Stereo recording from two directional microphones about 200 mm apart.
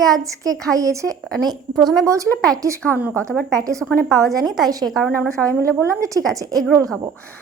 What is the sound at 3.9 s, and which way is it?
A woman's voice, centre (ahead or behind).